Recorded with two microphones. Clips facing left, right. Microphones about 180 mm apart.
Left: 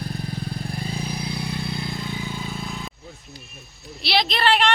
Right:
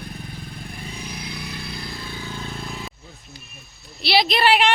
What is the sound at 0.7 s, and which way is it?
Vehicle, 35° left (ahead or behind).